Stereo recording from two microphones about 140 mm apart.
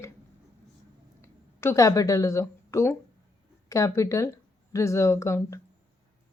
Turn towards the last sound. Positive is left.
turn(degrees=20)  # may be behind; listen again after turning